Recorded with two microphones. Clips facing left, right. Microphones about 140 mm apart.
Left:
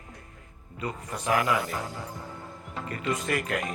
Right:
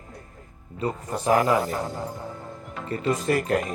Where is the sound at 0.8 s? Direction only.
35° right (ahead or behind).